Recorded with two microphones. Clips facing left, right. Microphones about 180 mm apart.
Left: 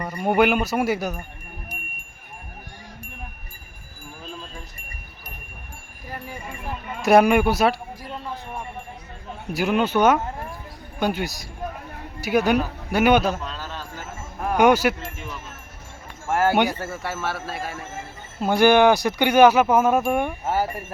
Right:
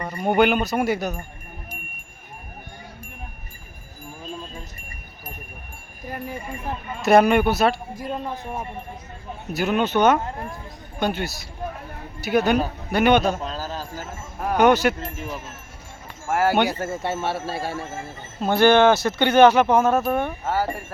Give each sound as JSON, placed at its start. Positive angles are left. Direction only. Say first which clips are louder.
{"t": 0.0, "sound": "speech", "louder": "even", "side_deg": 10}
{"t": 7.0, "sound": "speech", "louder": "even", "side_deg": 10}
{"t": 7.9, "sound": "speech", "louder": "right 5 dB", "side_deg": -45}
{"t": 9.5, "sound": "speech", "louder": "even", "side_deg": 10}
{"t": 13.4, "sound": "a sound", "louder": "right 4 dB", "side_deg": -40}
{"t": 14.5, "sound": "speech", "louder": "even", "side_deg": 10}
{"t": 16.2, "sound": "speech", "louder": "even", "side_deg": -10}
{"t": 16.7, "sound": "speech", "louder": "right 4 dB", "side_deg": -20}
{"t": 18.3, "sound": "speech", "louder": "even", "side_deg": 10}